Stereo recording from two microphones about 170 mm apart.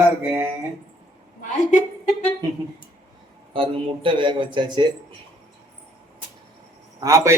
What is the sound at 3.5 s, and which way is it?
A man's voice, 30° right (ahead or behind).